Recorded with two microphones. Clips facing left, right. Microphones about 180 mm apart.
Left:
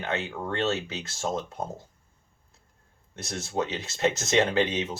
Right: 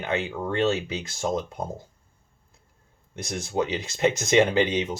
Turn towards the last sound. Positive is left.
turn(degrees=-15)  # may be behind; listen again after turning